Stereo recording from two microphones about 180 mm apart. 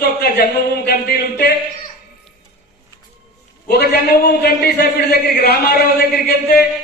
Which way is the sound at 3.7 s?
65° left (ahead or behind).